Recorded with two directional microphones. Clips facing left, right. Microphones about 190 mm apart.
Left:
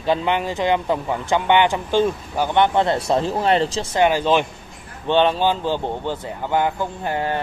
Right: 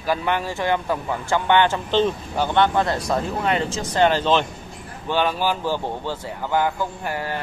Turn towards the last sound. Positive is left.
turn(degrees=25)  # may be behind; listen again after turning